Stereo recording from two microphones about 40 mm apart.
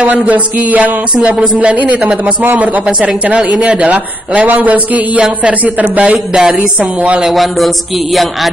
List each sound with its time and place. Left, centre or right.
0.0 s music: right
3.3 s music: right
3.6 s a man's voice: right
4.5 s music: right
6.3 s a sound: centre
6.8 s music: right
7.3 s a sound: centre